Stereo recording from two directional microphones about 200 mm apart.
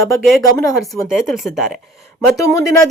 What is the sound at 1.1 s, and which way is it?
Speech, centre (ahead or behind).